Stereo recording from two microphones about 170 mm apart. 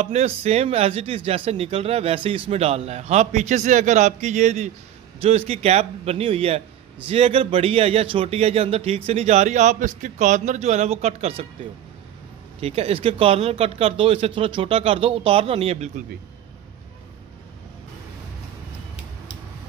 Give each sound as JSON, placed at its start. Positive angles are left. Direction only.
{"t": 0.0, "sound": "speech", "side_deg": -40}
{"t": 12.5, "sound": "speech", "side_deg": -35}